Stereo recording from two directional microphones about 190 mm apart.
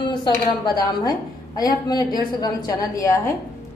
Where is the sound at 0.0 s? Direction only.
25° left (ahead or behind).